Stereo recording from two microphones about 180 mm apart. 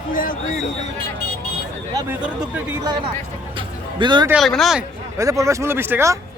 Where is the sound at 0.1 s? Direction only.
50° left (ahead or behind).